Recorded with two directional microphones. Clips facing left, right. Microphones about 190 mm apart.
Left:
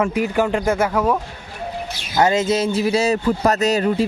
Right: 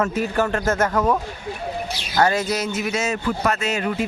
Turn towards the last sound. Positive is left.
turn(degrees=35)  # may be behind; listen again after turning